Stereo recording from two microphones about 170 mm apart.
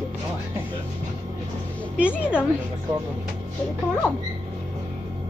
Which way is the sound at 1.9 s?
5° right (ahead or behind).